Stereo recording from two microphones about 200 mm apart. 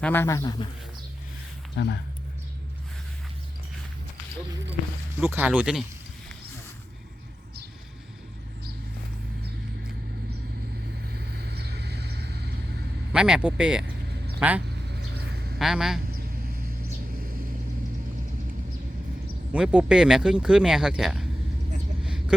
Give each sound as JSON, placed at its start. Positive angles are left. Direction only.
{"t": 0.0, "sound": "a man's voice", "side_deg": 10}
{"t": 1.7, "sound": "speech", "side_deg": 60}
{"t": 5.3, "sound": "speech", "side_deg": -10}
{"t": 11.0, "sound": "vehicle", "side_deg": -55}
{"t": 13.1, "sound": "speech", "side_deg": -5}
{"t": 14.8, "sound": "vehicle", "side_deg": -55}
{"t": 15.5, "sound": "speech", "side_deg": 0}
{"t": 16.1, "sound": "vehicle", "side_deg": -50}
{"t": 19.5, "sound": "speech", "side_deg": -5}
{"t": 22.0, "sound": "vehicle", "side_deg": -5}